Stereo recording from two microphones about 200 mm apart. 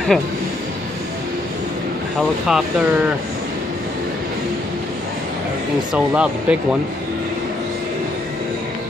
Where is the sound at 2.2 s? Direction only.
Centre (ahead or behind).